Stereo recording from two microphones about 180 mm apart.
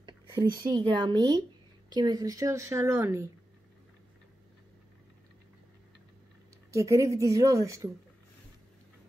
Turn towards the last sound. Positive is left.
turn(degrees=-20)  # may be behind; listen again after turning